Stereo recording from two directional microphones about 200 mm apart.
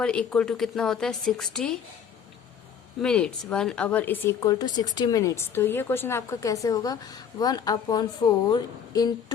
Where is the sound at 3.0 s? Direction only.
5° left (ahead or behind).